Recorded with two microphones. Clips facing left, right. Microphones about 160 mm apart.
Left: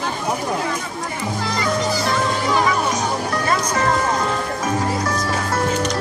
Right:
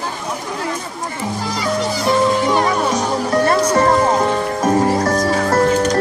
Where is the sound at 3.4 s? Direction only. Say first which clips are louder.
Right 6 dB; 40° right (ahead or behind).